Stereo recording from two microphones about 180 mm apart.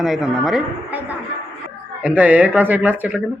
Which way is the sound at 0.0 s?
5° right (ahead or behind).